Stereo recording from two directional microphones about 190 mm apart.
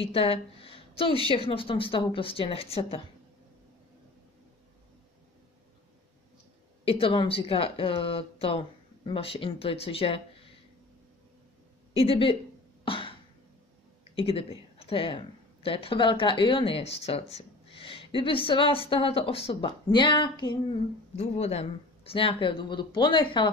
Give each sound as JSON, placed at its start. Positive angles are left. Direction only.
{"t": 0.0, "sound": "a woman's voice", "side_deg": 30}
{"t": 6.8, "sound": "speech", "side_deg": 30}
{"t": 11.9, "sound": "speech", "side_deg": 30}
{"t": 12.8, "sound": "cough", "side_deg": 25}
{"t": 14.1, "sound": "speech", "side_deg": 30}